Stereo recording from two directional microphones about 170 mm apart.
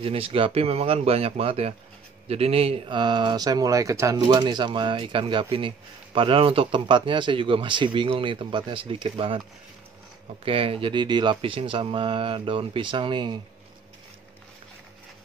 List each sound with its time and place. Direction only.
0.0 s speech: 35° right (ahead or behind)
10.4 s speech: 35° right (ahead or behind)